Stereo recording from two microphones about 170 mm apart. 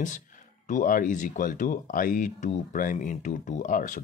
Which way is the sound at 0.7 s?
50° left (ahead or behind).